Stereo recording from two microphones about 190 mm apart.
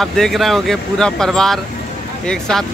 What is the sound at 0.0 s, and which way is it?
Speech, centre (ahead or behind).